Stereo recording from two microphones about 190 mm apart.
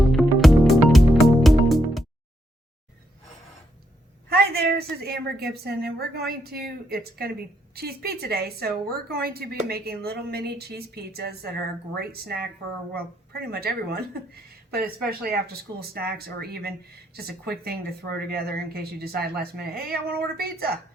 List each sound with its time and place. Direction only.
0.1 s music: centre (ahead or behind)
4.3 s speech: 55° right (ahead or behind)
15.2 s speech: 55° right (ahead or behind)